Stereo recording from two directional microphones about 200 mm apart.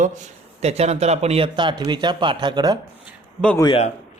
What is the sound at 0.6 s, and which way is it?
Speech, 30° right (ahead or behind).